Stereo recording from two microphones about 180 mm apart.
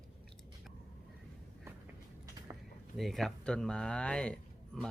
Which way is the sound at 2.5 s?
20° right (ahead or behind).